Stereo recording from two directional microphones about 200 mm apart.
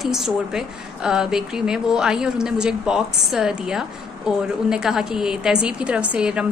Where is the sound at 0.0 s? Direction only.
Centre (ahead or behind).